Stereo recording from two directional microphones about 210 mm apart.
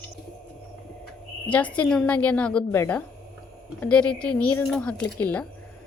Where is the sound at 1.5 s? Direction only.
5° left (ahead or behind).